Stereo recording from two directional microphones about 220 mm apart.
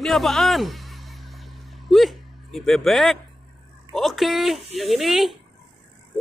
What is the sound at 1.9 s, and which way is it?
Speech, centre (ahead or behind).